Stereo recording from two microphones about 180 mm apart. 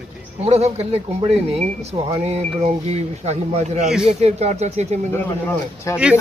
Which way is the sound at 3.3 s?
35° right (ahead or behind).